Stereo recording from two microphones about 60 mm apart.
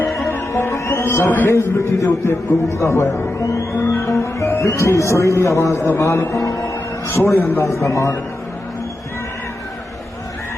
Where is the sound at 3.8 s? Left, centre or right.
Left.